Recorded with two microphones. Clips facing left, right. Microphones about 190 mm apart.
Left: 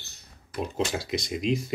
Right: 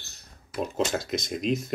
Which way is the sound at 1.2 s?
50° right (ahead or behind).